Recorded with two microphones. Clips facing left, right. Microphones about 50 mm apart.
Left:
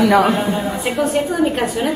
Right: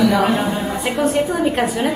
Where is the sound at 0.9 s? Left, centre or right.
Centre.